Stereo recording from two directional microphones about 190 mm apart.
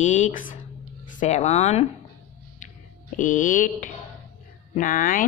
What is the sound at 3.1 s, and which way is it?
Speech, 45° left (ahead or behind).